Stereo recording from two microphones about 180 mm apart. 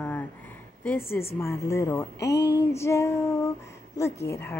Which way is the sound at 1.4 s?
15° left (ahead or behind).